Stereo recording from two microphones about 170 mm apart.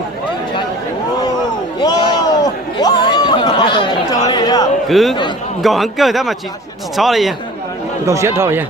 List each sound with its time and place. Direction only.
1.8 s a sound: 25° left (ahead or behind)
4.9 s a man's voice: centre (ahead or behind)
8.0 s speech: 15° right (ahead or behind)